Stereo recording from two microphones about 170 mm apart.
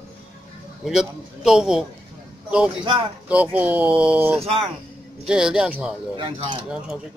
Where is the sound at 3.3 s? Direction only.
10° right (ahead or behind).